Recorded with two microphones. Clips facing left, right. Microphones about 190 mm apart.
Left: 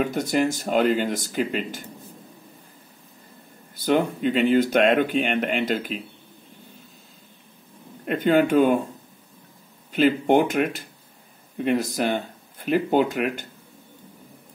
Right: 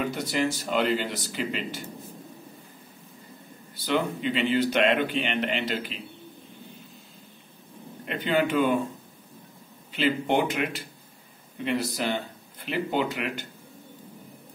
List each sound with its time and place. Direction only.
0.0 s speech: 50° left (ahead or behind)
3.8 s speech: 45° left (ahead or behind)
8.0 s speech: 45° left (ahead or behind)
9.9 s speech: 45° left (ahead or behind)